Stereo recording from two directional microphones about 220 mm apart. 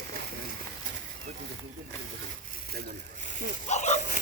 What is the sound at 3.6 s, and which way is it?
Speech, 30° left (ahead or behind).